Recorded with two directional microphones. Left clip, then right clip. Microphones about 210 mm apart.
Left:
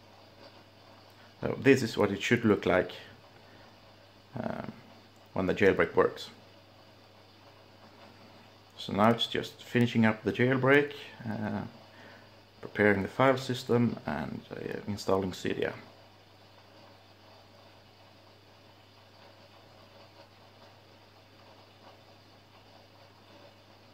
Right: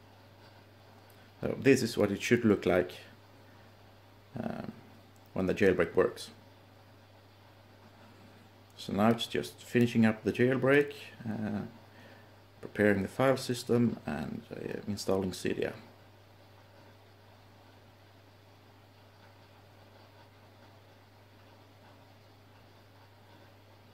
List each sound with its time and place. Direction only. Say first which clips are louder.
1.4 s speech: left 2 dB; 10° right (ahead or behind)
4.3 s a sound: left 3 dB; 10° right (ahead or behind)
5.3 s speech: left 2 dB; 10° right (ahead or behind)
8.8 s speech: left 3 dB; 10° right (ahead or behind)
12.7 s speech: left 2 dB; 10° right (ahead or behind)